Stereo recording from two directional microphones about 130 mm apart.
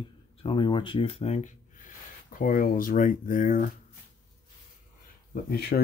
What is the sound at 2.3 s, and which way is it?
Speech, 90° left.